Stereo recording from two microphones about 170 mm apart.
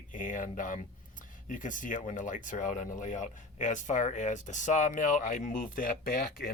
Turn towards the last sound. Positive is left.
turn(degrees=60)  # may be behind; listen again after turning